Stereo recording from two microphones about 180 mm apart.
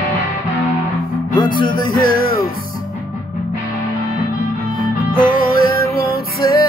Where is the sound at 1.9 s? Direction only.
60° right (ahead or behind).